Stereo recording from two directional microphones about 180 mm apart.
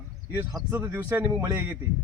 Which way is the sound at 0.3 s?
15° right (ahead or behind).